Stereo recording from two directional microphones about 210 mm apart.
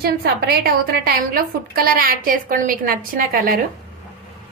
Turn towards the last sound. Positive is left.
turn(degrees=-45)  # may be behind; listen again after turning